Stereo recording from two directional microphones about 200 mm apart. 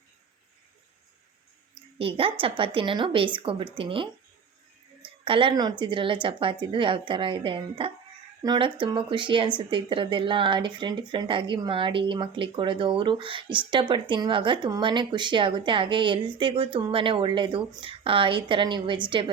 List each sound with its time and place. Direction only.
2.0 s speech: 25° right (ahead or behind)
5.2 s speech: 25° right (ahead or behind)